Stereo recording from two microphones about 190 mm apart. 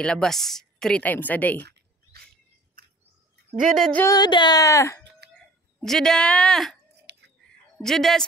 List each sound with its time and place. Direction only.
0.0 s a woman's voice: 5° left (ahead or behind)
3.7 s a woman's voice: centre (ahead or behind)
4.0 s speech: 20° left (ahead or behind)
5.4 s speech: centre (ahead or behind)
7.1 s a sound: 60° right (ahead or behind)
7.8 s a woman's voice: centre (ahead or behind)